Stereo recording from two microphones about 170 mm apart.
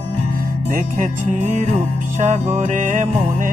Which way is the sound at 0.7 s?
45° right (ahead or behind).